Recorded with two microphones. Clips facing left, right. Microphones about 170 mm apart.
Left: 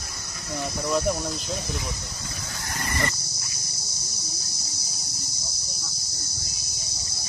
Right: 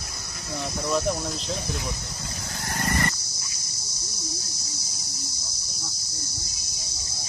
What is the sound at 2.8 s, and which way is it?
Dog, 55° right (ahead or behind).